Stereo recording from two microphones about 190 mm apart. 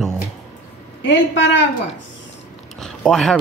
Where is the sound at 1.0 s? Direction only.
70° left (ahead or behind).